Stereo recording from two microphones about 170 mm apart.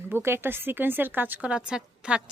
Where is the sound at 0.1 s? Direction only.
15° right (ahead or behind).